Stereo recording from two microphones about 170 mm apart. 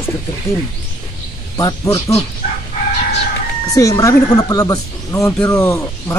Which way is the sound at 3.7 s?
20° left (ahead or behind).